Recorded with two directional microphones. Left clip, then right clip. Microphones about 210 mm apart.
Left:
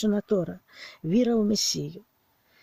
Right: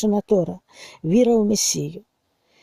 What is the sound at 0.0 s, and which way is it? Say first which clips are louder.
Speech: right 7 dB; 20° right (ahead or behind).